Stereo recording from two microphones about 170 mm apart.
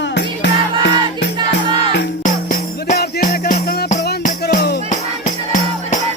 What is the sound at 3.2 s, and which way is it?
Music, 50° left (ahead or behind).